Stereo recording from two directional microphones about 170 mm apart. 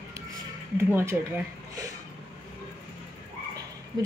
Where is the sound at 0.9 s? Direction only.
10° right (ahead or behind).